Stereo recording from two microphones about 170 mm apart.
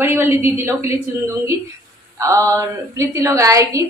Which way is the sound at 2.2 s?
20° right (ahead or behind).